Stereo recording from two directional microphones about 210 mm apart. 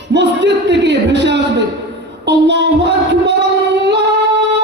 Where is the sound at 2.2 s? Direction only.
55° right (ahead or behind).